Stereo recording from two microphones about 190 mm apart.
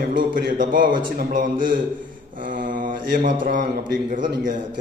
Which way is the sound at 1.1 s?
45° right (ahead or behind).